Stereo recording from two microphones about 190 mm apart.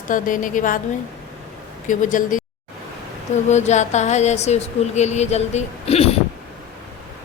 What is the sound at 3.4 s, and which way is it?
A woman's voice, 35° left (ahead or behind).